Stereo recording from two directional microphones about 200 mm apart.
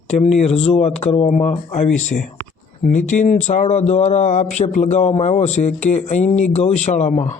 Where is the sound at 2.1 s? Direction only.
45° left (ahead or behind).